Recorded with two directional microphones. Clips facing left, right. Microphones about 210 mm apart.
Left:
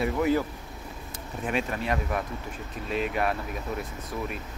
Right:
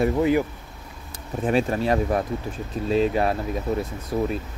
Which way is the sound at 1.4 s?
35° right (ahead or behind).